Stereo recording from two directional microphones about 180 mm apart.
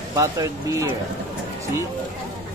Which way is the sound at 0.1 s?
20° right (ahead or behind).